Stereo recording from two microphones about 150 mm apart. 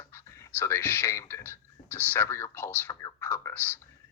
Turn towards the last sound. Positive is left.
turn(degrees=15)  # may be behind; listen again after turning